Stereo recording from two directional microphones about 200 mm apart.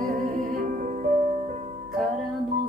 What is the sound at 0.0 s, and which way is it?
Music, 35° right (ahead or behind).